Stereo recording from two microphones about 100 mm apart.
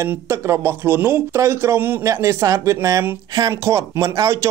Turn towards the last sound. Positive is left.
turn(degrees=-30)  # may be behind; listen again after turning